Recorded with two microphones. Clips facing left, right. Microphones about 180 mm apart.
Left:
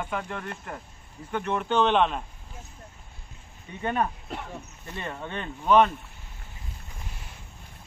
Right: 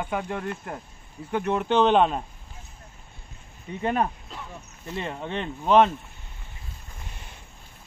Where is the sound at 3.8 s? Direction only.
30° right (ahead or behind).